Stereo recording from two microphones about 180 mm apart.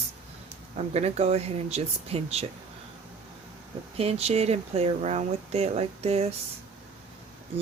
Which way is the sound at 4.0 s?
35° right (ahead or behind).